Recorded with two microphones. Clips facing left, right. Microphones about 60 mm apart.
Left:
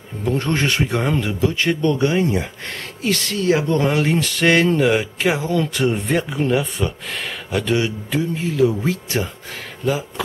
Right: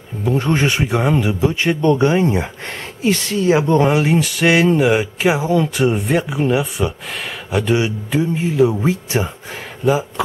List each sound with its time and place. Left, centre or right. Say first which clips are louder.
0.2 s a man's voice: right 3 dB; centre
3.9 s a man's voice: right 3 dB; centre